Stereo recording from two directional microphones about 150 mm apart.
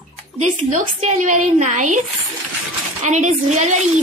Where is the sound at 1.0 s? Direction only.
55° right (ahead or behind).